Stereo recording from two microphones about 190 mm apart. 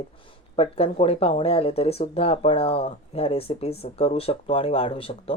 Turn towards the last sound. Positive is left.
turn(degrees=30)  # may be behind; listen again after turning